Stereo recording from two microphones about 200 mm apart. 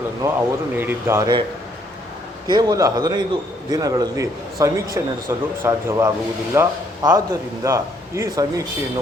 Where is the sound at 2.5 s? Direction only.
20° right (ahead or behind).